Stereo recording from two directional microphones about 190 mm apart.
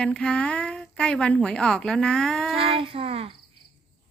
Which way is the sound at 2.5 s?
30° right (ahead or behind).